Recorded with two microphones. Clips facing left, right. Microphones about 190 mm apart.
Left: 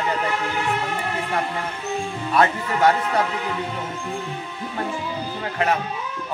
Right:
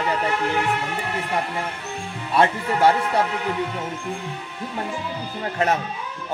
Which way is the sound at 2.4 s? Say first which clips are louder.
Right 1 dB; 30° right (ahead or behind).